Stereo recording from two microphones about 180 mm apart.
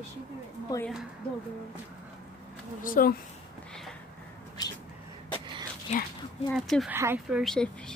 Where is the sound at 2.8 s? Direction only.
50° left (ahead or behind).